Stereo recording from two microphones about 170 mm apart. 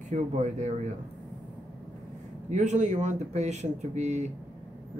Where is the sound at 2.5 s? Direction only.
45° right (ahead or behind).